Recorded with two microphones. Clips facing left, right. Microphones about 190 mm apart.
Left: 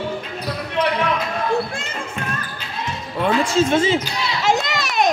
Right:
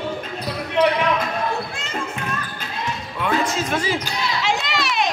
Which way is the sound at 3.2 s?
30° left (ahead or behind).